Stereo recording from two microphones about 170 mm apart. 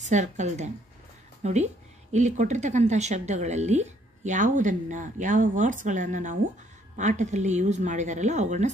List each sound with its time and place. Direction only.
0.0 s speech: 45° right (ahead or behind)